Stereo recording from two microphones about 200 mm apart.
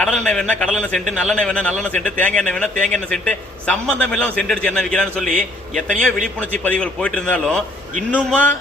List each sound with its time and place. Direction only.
0.0 s a man's voice: 5° left (ahead or behind)